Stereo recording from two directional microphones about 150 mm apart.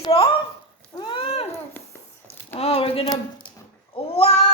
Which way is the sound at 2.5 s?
40° left (ahead or behind).